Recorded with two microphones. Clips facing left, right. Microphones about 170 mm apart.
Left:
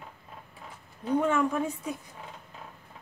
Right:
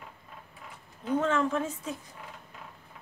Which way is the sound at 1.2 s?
10° left (ahead or behind).